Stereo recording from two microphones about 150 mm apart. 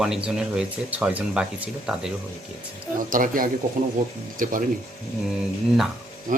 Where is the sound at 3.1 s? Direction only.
65° right (ahead or behind).